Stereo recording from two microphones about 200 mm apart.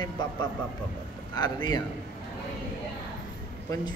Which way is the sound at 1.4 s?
20° left (ahead or behind).